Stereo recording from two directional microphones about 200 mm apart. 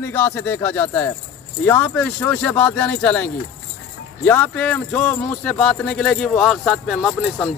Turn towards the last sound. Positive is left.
turn(degrees=0)  # may be behind; listen again after turning